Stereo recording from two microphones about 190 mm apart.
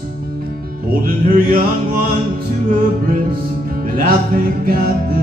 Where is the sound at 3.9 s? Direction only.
50° right (ahead or behind).